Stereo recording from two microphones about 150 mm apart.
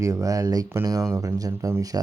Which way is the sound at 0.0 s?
20° right (ahead or behind).